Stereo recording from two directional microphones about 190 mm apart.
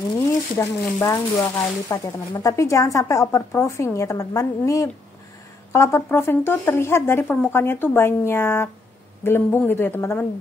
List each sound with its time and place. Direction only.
0.6 s speech: 15° left (ahead or behind)